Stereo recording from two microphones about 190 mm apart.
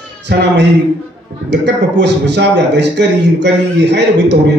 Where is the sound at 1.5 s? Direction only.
65° right (ahead or behind).